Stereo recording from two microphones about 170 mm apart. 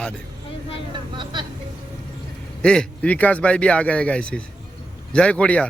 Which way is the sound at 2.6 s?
5° left (ahead or behind).